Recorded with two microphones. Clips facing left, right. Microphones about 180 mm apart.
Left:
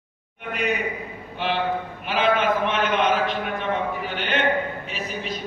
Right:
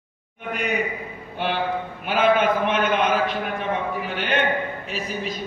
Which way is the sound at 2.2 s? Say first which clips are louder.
Right 3 dB; 45° right (ahead or behind).